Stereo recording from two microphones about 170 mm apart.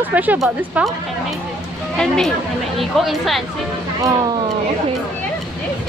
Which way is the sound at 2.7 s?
Centre (ahead or behind).